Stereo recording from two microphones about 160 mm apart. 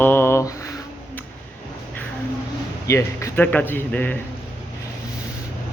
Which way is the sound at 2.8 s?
20° left (ahead or behind).